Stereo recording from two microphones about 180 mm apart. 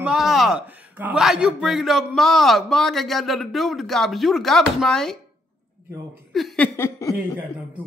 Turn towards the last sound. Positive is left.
turn(degrees=15)  # may be behind; listen again after turning